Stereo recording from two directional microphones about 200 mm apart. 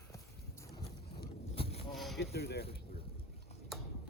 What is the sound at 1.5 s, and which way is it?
Vehicle, 30° left (ahead or behind).